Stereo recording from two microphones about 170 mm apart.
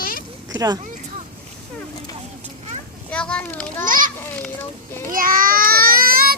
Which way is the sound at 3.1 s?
5° left (ahead or behind).